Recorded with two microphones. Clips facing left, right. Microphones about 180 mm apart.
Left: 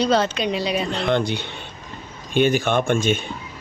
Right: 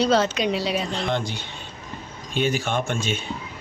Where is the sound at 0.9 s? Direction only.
60° left (ahead or behind).